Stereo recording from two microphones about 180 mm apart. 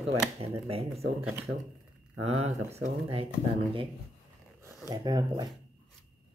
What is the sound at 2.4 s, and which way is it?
Speech, 35° right (ahead or behind).